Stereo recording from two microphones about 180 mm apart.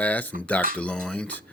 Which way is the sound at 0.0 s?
10° left (ahead or behind).